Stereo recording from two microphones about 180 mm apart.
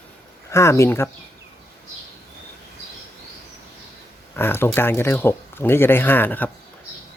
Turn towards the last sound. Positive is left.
turn(degrees=10)  # may be behind; listen again after turning